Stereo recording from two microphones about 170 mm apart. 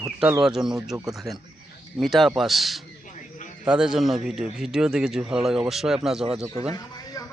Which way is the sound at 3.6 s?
5° right (ahead or behind).